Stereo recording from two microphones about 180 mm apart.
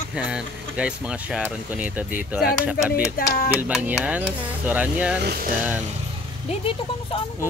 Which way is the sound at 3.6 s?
10° right (ahead or behind).